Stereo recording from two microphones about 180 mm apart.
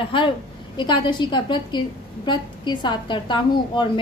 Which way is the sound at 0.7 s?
25° left (ahead or behind).